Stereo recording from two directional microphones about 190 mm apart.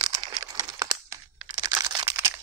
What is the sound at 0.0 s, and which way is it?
Crumpling, 20° right (ahead or behind).